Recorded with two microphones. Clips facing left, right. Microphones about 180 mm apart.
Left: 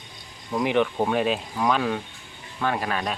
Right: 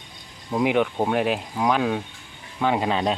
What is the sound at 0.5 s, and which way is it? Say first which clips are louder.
Speech: right 1 dB; 15° right (ahead or behind).